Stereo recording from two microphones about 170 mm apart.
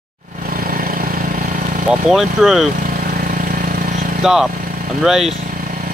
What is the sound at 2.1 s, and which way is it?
Speech, centre (ahead or behind).